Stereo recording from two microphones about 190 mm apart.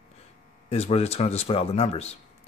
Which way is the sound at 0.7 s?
35° left (ahead or behind).